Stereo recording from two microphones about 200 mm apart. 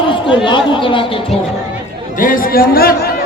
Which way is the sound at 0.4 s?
25° left (ahead or behind).